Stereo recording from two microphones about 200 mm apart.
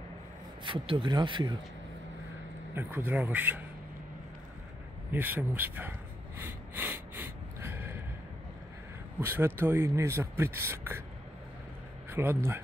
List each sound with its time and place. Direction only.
0.7 s speech: 25° right (ahead or behind)
2.7 s speech: 10° right (ahead or behind)
5.1 s a sound: 10° right (ahead or behind)
9.2 s speech: 10° right (ahead or behind)
12.1 s speech: 10° right (ahead or behind)